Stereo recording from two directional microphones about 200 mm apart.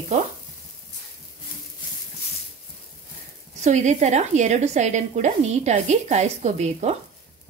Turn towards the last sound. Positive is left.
turn(degrees=-35)  # may be behind; listen again after turning